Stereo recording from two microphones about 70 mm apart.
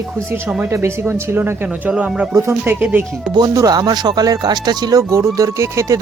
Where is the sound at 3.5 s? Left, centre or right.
Right.